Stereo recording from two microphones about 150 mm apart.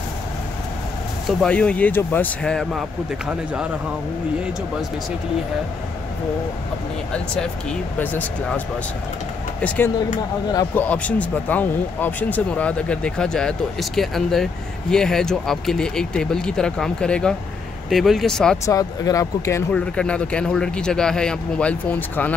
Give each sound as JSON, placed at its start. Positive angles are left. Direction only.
{"t": 1.4, "sound": "speech", "side_deg": 5}
{"t": 3.3, "sound": "speech", "side_deg": -10}
{"t": 8.0, "sound": "speech", "side_deg": 10}
{"t": 18.7, "sound": "speech", "side_deg": 20}
{"t": 19.7, "sound": "speech", "side_deg": 5}